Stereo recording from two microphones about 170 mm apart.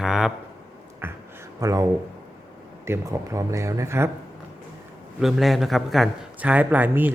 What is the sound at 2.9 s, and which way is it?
A man's voice, 15° right (ahead or behind).